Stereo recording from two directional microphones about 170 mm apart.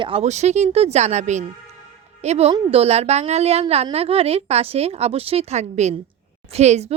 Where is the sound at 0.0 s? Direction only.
35° right (ahead or behind).